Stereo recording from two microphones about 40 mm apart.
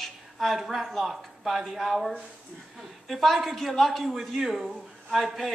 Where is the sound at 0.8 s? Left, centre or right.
Centre.